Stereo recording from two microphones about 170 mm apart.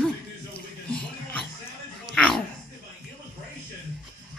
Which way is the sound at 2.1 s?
5° left (ahead or behind).